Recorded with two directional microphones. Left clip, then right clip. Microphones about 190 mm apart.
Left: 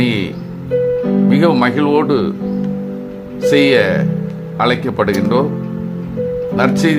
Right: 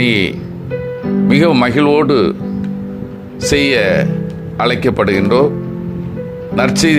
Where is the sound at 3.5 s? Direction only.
25° right (ahead or behind).